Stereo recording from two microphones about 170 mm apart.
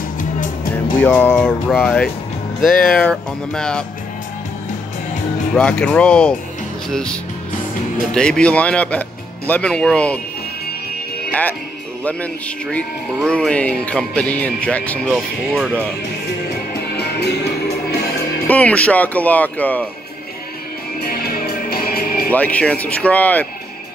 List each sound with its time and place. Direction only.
0.9 s speech: 10° left (ahead or behind)
5.5 s speech: 5° left (ahead or behind)
12.0 s speech: 10° left (ahead or behind)
15.1 s speech: 5° right (ahead or behind)
18.5 s speech: 10° left (ahead or behind)
21.0 s music: 65° left (ahead or behind)
22.3 s speech: 10° left (ahead or behind)